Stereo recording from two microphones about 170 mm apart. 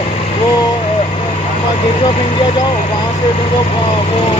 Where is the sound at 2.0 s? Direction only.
30° left (ahead or behind).